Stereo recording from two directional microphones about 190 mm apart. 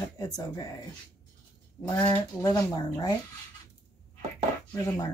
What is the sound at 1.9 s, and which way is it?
Speech, 20° left (ahead or behind).